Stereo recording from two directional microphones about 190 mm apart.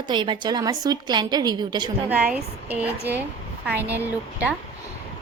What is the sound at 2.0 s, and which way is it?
Speech, 5° right (ahead or behind).